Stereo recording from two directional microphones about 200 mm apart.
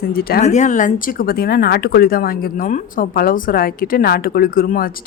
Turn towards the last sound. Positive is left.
turn(degrees=45)  # may be behind; listen again after turning